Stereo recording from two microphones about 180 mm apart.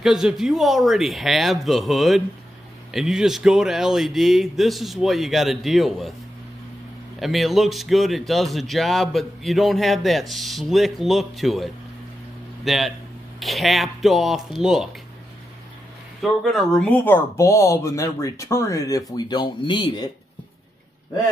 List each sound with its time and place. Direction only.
0.0 s speech: 5° right (ahead or behind)
7.2 s speech: centre (ahead or behind)
16.2 s speech: centre (ahead or behind); by 20.1 s 25° left (ahead or behind)